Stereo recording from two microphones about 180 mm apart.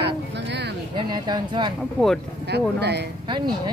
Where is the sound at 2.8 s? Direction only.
65° right (ahead or behind).